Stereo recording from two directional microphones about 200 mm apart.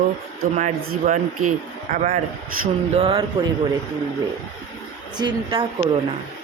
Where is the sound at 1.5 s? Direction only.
40° right (ahead or behind).